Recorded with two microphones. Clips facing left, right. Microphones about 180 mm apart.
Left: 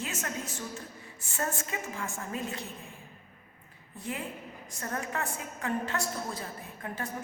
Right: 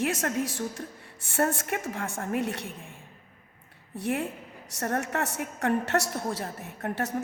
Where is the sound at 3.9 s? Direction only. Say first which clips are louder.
Right 8 dB; 80° right.